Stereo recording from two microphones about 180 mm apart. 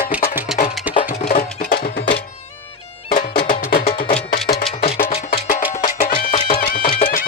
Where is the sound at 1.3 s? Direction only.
50° left (ahead or behind).